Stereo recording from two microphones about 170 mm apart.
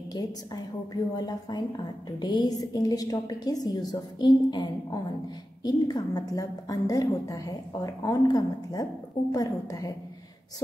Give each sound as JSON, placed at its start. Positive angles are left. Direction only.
{"t": 0.1, "sound": "a woman's voice", "side_deg": 25}